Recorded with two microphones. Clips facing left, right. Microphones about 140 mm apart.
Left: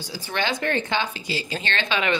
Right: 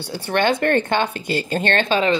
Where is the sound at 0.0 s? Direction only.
60° right (ahead or behind).